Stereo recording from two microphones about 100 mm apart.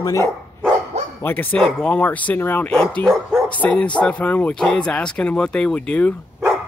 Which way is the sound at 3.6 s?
15° left (ahead or behind).